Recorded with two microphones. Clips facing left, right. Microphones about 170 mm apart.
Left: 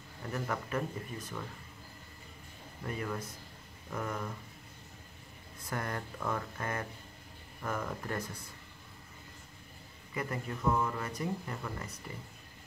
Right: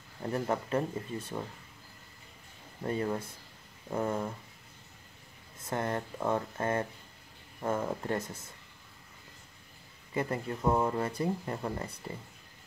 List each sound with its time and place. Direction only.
0.2 s speech: 30° right (ahead or behind)
2.8 s speech: 30° right (ahead or behind)
5.6 s speech: 25° right (ahead or behind)
10.1 s speech: 30° right (ahead or behind)